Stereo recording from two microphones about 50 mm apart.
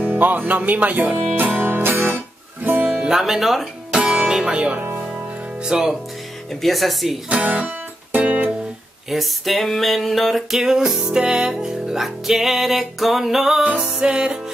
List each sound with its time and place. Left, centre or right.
0.0 s speech: right
1.1 s music: right
2.8 s music: right
3.1 s a sound: centre
3.9 s music: centre
4.7 s music: right
5.0 s music: centre
6.5 s a sound: centre
7.4 s music: right
9.1 s a sound: centre
10.6 s music: centre